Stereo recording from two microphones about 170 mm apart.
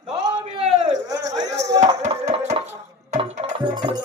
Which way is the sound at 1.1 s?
20° right (ahead or behind).